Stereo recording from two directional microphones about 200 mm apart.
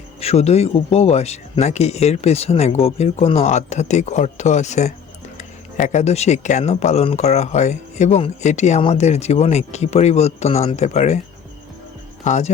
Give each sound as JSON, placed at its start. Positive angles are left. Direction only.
{"t": 0.2, "sound": "speech", "side_deg": 30}
{"t": 12.2, "sound": "speech", "side_deg": 35}